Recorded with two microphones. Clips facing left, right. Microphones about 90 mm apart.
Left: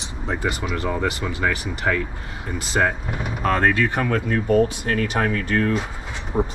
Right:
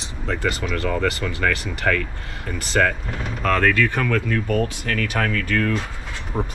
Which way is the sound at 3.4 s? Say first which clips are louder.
Even; 25° left (ahead or behind).